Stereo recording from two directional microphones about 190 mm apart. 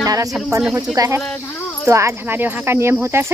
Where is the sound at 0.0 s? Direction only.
20° right (ahead or behind).